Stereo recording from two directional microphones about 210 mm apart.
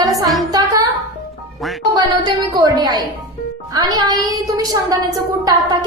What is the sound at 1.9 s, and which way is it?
A woman's voice, 20° right (ahead or behind).